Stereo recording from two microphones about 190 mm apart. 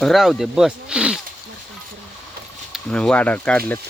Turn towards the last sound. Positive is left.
turn(degrees=5)  # may be behind; listen again after turning